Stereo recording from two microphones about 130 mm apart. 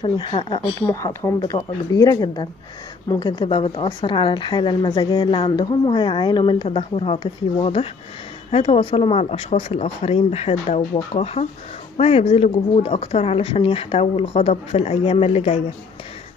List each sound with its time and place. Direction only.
0.0 s speech: 40° left (ahead or behind)
0.7 s speech: 20° left (ahead or behind); by 15.6 s 55° left (ahead or behind)